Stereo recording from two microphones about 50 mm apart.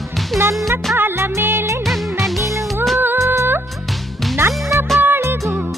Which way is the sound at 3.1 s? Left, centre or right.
Right.